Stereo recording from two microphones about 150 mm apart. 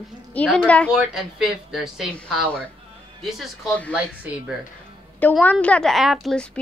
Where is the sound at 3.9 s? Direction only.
10° right (ahead or behind).